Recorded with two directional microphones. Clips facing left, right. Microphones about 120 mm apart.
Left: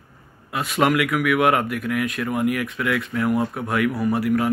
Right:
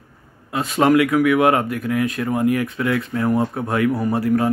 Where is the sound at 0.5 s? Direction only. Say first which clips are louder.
Right 4 dB; 30° right (ahead or behind).